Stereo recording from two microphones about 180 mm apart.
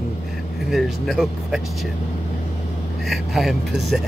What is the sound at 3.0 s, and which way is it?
Speech, centre (ahead or behind).